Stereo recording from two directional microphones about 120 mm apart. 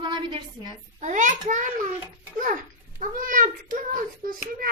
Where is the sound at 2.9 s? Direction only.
90° right.